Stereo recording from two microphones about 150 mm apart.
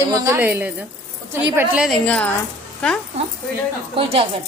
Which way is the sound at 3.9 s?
40° right (ahead or behind).